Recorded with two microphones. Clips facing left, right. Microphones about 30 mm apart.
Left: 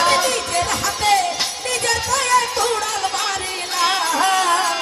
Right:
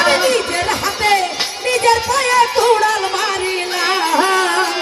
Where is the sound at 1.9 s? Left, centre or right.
Right.